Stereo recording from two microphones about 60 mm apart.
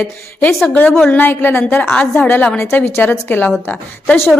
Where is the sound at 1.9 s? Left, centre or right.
Centre.